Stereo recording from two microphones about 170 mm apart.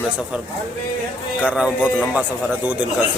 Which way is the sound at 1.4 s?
5° right (ahead or behind).